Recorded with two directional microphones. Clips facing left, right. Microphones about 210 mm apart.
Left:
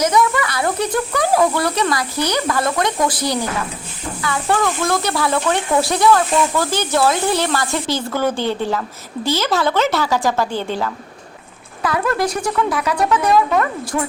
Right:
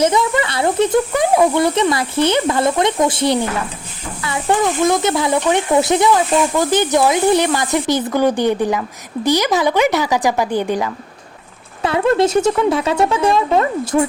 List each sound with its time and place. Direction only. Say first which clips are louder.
0.0 s speech: right 1 dB; 25° right (ahead or behind)
11.8 s speech: right 5 dB; 25° right (ahead or behind)